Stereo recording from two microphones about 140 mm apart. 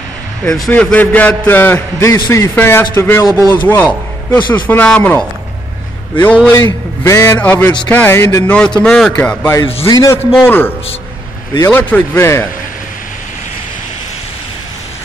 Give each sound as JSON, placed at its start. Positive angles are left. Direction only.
{"t": 0.7, "sound": "a man's voice", "side_deg": 10}
{"t": 4.4, "sound": "a man's voice", "side_deg": 35}
{"t": 4.6, "sound": "a man's voice", "side_deg": 10}
{"t": 6.5, "sound": "a man's voice", "side_deg": 25}
{"t": 8.5, "sound": "a man's voice", "side_deg": 5}
{"t": 9.8, "sound": "a man's voice", "side_deg": 25}
{"t": 10.4, "sound": "a man's voice", "side_deg": 15}
{"t": 11.7, "sound": "a man's voice", "side_deg": 10}